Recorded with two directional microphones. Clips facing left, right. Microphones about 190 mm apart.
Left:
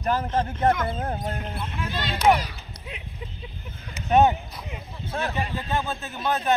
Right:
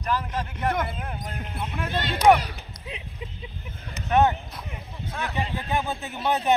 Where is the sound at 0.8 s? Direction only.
35° left (ahead or behind).